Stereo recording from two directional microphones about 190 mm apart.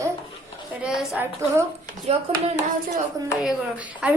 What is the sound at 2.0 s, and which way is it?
Speech, 35° right (ahead or behind).